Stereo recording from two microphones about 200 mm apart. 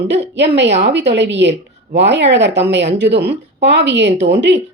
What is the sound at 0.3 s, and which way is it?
Speech, 60° right (ahead or behind).